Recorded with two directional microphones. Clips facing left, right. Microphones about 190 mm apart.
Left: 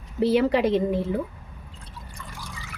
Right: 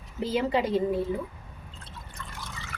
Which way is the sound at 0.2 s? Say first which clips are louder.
Left 6 dB; 75° left (ahead or behind).